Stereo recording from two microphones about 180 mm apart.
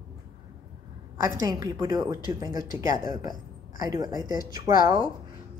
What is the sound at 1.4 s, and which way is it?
Speech, 20° right (ahead or behind).